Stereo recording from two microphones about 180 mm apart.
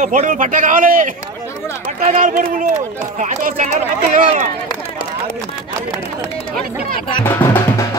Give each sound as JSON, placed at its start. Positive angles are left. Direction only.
{"t": 0.0, "sound": "a man's voice", "side_deg": -45}
{"t": 7.2, "sound": "speech", "side_deg": 10}